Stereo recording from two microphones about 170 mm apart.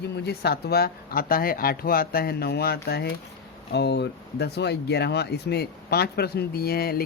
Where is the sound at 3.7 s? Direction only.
85° left; by 7.0 s 65° left (ahead or behind).